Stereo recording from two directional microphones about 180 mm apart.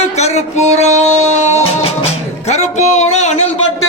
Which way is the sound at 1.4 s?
40° left (ahead or behind).